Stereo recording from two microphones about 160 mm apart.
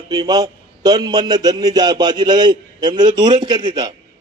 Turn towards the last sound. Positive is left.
turn(degrees=-25)  # may be behind; listen again after turning